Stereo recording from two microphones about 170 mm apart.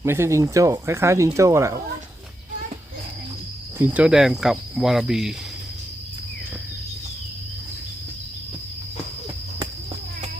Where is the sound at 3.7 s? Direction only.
10° right (ahead or behind).